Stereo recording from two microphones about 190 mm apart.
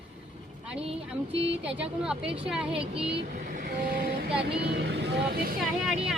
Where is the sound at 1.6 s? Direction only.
5° right (ahead or behind).